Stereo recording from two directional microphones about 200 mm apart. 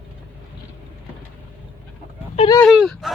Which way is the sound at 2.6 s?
Centre (ahead or behind).